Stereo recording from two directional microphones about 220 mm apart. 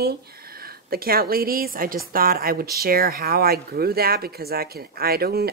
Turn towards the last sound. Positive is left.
turn(degrees=-45)  # may be behind; listen again after turning